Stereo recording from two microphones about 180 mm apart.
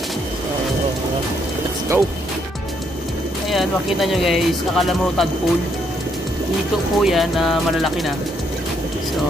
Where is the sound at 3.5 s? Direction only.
Centre (ahead or behind).